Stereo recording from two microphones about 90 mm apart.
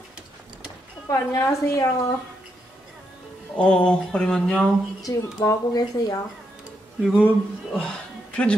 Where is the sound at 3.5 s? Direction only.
10° left (ahead or behind).